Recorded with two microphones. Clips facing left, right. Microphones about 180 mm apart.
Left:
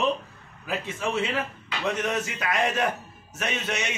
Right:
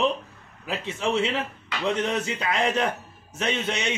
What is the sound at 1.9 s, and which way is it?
A man's voice, 25° right (ahead or behind).